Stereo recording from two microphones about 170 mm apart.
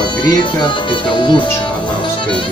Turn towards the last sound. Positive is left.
turn(degrees=30)  # may be behind; listen again after turning